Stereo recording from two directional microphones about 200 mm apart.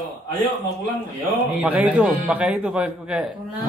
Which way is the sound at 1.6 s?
5° right (ahead or behind).